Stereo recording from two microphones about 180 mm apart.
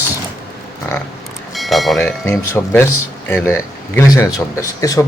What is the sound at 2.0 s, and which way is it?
Speech, 15° left (ahead or behind).